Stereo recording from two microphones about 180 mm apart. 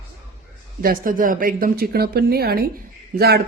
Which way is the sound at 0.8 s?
50° right (ahead or behind).